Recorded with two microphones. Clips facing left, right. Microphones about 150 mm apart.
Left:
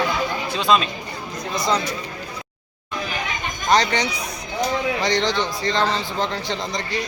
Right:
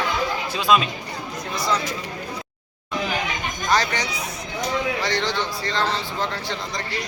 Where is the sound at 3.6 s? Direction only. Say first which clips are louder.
Left 4 dB; 20° left (ahead or behind).